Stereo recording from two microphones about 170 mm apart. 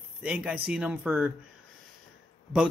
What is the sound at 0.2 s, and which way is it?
Speech, 5° right (ahead or behind).